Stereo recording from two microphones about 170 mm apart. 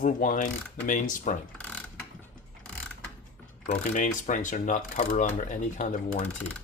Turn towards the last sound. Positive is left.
turn(degrees=45)  # may be behind; listen again after turning